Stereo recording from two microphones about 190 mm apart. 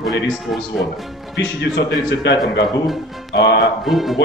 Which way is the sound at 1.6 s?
65° left (ahead or behind).